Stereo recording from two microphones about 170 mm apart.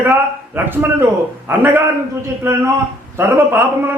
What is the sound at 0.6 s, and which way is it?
A man's voice, 10° right (ahead or behind).